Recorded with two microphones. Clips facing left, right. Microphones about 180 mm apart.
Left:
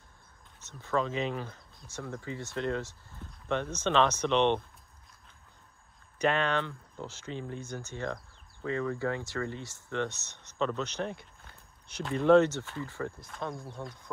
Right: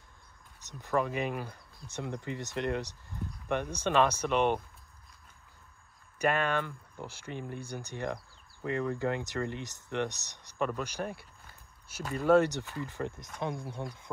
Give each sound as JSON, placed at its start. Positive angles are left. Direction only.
{"t": 0.7, "sound": "speech", "side_deg": -15}
{"t": 6.1, "sound": "speech", "side_deg": -10}
{"t": 12.8, "sound": "speech", "side_deg": -15}